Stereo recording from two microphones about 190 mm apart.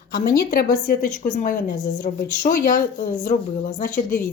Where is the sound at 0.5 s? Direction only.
50° left (ahead or behind).